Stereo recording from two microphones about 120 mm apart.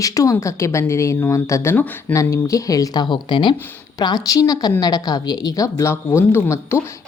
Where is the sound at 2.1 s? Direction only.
25° left (ahead or behind).